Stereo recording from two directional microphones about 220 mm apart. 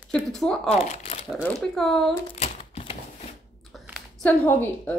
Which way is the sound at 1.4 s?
5° left (ahead or behind).